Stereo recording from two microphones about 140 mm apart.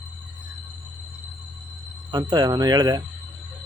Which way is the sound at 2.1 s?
30° right (ahead or behind).